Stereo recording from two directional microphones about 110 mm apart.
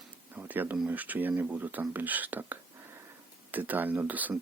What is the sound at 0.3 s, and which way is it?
Speech, 15° right (ahead or behind).